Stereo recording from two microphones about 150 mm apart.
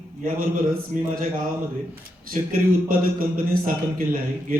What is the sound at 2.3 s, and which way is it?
A man's voice, 70° right (ahead or behind).